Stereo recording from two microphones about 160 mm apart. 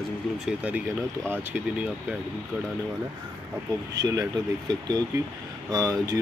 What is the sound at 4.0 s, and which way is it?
Speech, 25° right (ahead or behind).